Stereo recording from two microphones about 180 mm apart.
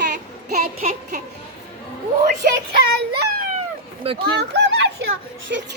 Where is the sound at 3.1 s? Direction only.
60° right (ahead or behind).